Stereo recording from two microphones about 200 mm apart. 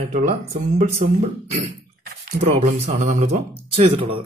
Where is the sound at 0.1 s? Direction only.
35° right (ahead or behind).